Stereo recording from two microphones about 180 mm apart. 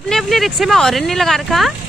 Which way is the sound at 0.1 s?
Centre (ahead or behind).